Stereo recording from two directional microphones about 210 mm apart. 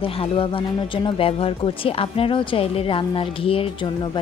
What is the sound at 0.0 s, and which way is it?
Speech, 25° left (ahead or behind).